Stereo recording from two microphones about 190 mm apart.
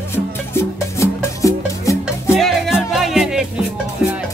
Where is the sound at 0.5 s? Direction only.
15° left (ahead or behind).